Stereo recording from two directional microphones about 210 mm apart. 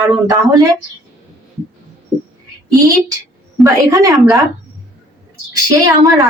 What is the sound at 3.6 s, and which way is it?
Speech, 15° right (ahead or behind).